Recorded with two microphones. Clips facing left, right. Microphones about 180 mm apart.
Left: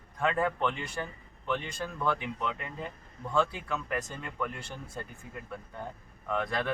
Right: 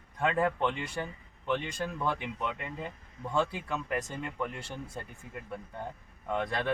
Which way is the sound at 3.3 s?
15° right (ahead or behind).